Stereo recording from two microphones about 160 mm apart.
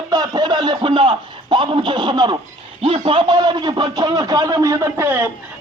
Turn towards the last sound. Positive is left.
turn(degrees=-15)  # may be behind; listen again after turning